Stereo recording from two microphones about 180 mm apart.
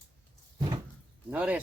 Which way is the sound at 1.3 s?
5° right (ahead or behind).